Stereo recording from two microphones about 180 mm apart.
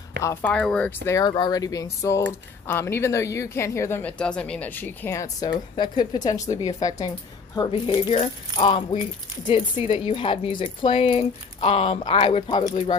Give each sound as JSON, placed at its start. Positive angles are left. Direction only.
{"t": 0.2, "sound": "speech", "side_deg": 10}